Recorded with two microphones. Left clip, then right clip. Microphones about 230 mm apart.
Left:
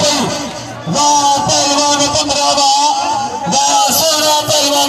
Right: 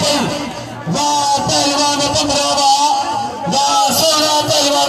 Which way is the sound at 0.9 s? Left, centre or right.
Left.